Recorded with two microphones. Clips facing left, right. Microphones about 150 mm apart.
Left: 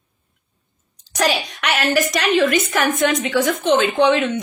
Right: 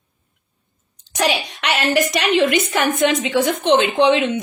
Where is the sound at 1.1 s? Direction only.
25° right (ahead or behind).